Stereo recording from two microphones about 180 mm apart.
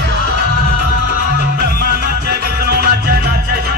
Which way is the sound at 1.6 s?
60° right (ahead or behind).